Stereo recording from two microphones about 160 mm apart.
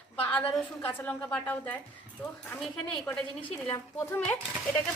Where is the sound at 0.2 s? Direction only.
10° left (ahead or behind).